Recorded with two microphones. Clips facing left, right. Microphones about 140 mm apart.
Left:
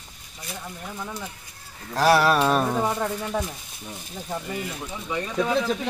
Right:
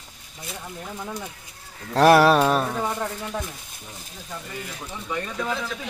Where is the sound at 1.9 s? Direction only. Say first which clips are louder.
Right 4 dB; 55° right (ahead or behind).